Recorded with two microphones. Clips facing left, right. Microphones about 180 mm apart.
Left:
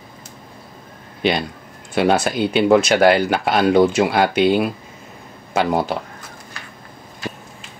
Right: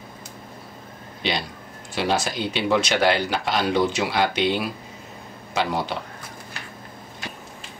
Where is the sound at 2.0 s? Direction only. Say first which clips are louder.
Left 7 dB; 55° left (ahead or behind).